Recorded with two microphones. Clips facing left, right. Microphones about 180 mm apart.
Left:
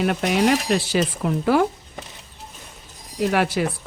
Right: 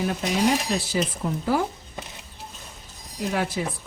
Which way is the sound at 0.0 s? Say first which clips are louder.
Left 4 dB; 70° left (ahead or behind).